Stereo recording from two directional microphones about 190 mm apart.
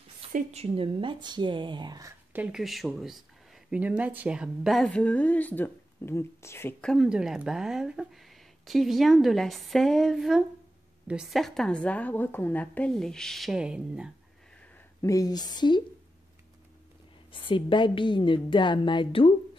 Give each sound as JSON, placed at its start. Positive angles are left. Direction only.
{"t": 0.3, "sound": "speech", "side_deg": -35}
{"t": 15.0, "sound": "a woman's voice", "side_deg": 15}
{"t": 17.3, "sound": "a woman's voice", "side_deg": 25}